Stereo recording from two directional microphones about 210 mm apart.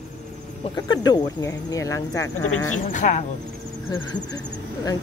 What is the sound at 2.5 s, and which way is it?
Speech, 90° left.